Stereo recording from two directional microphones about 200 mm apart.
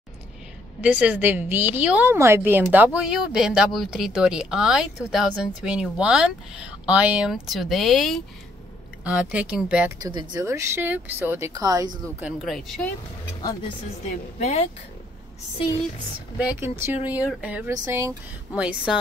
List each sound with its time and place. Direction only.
0.8 s a woman's voice: 5° right (ahead or behind)
10.0 s speech: 20° right (ahead or behind)
12.2 s a woman's voice: 5° right (ahead or behind)
13.4 s speech: 20° left (ahead or behind)
14.4 s speech: 30° left (ahead or behind)
16.3 s speech: 10° right (ahead or behind)